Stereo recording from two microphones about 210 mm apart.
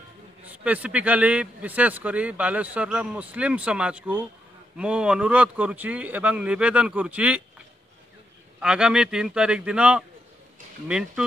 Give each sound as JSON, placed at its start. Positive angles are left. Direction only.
{"t": 0.5, "sound": "speech", "side_deg": -5}
{"t": 8.5, "sound": "speech", "side_deg": -5}